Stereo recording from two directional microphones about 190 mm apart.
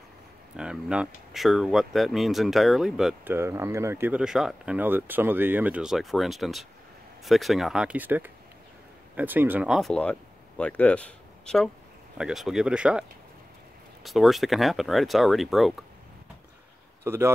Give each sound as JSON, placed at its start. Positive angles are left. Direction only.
{"t": 0.6, "sound": "speech", "side_deg": -5}
{"t": 14.0, "sound": "speech", "side_deg": 0}
{"t": 17.0, "sound": "speech", "side_deg": -10}